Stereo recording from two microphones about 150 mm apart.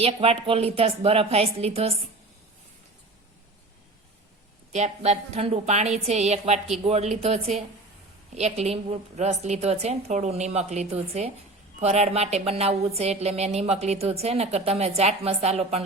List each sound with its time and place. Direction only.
0.0 s speech: 40° right (ahead or behind)
4.7 s a woman's voice: 45° right (ahead or behind)